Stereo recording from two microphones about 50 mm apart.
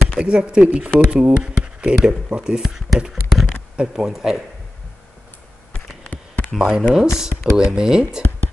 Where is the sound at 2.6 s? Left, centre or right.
Centre.